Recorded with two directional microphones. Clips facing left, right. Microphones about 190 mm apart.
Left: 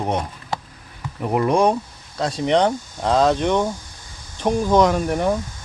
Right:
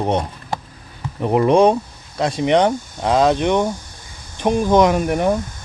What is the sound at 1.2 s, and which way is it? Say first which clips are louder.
Speech: right 4 dB; 25° right (ahead or behind).